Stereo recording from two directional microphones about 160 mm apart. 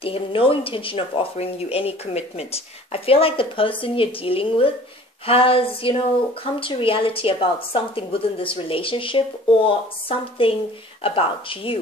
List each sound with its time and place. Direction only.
0.0 s a woman's voice: 35° left (ahead or behind)